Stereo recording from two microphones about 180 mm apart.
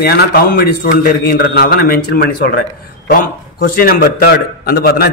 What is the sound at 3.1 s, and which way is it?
A man's voice, 50° left (ahead or behind).